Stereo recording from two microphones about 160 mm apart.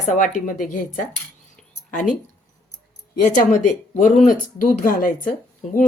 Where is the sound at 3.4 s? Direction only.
55° left (ahead or behind).